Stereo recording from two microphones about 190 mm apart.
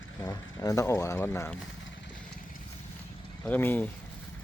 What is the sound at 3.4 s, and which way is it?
Speech, 10° left (ahead or behind).